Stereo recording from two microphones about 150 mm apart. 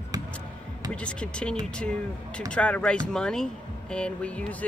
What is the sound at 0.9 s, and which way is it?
Speech, 5° left (ahead or behind).